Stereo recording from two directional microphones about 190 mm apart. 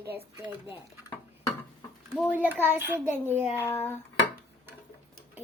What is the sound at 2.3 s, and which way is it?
A woman's voice, 10° right (ahead or behind).